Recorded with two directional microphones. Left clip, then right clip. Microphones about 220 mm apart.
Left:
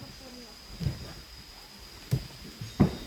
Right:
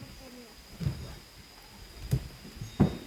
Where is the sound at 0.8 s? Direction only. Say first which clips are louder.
Left 1 dB; 5° right (ahead or behind).